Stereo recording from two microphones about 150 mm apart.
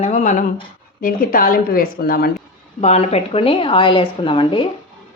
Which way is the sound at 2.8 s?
45° left (ahead or behind).